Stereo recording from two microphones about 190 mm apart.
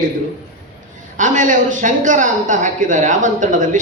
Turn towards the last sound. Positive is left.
turn(degrees=-40)  # may be behind; listen again after turning